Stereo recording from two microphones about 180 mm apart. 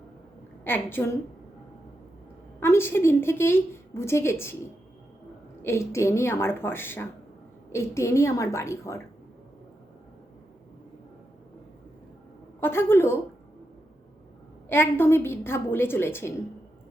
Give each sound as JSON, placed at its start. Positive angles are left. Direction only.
{"t": 0.6, "sound": "a woman's voice", "side_deg": 10}
{"t": 2.6, "sound": "a woman's voice", "side_deg": 15}
{"t": 5.6, "sound": "a woman's voice", "side_deg": 15}
{"t": 12.5, "sound": "a woman's voice", "side_deg": 10}
{"t": 14.7, "sound": "a woman's voice", "side_deg": 10}